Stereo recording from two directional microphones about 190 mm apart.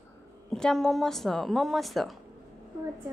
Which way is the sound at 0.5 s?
Centre (ahead or behind).